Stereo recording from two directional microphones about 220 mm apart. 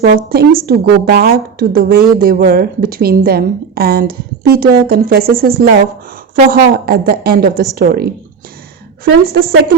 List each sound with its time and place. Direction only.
0.3 s a woman's voice: 45° right (ahead or behind)